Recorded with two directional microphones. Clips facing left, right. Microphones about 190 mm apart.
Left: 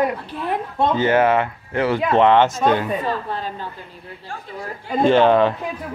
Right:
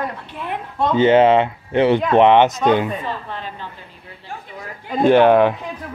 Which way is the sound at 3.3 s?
40° left (ahead or behind).